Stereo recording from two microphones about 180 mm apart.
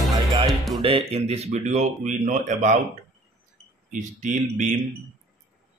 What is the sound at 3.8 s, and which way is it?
Speech, 45° right (ahead or behind).